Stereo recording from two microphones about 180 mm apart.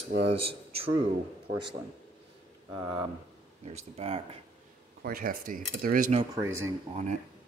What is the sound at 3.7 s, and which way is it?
Speech, 35° right (ahead or behind).